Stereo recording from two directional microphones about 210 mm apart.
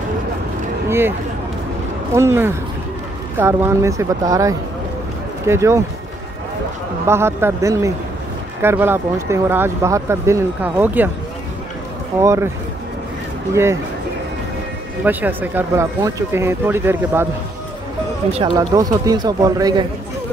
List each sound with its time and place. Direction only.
0.8 s speech: 10° right (ahead or behind)
2.1 s speech: 10° right (ahead or behind)
7.1 s speech: 10° right (ahead or behind)
12.2 s speech: 15° right (ahead or behind)
13.5 s speech: 10° right (ahead or behind)
15.0 s speech: 10° right (ahead or behind)
18.3 s speech: 20° right (ahead or behind)